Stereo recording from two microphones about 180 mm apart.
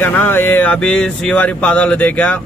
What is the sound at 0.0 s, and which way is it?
Speech, 10° left (ahead or behind).